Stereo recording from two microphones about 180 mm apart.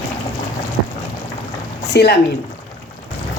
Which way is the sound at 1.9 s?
65° left (ahead or behind).